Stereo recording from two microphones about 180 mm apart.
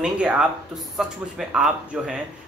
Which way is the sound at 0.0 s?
5° right (ahead or behind).